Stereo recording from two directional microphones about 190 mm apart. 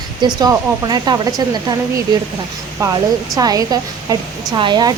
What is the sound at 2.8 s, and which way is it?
Speech, 20° right (ahead or behind).